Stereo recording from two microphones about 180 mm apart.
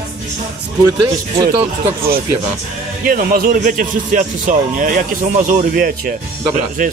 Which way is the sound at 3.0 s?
55° right (ahead or behind).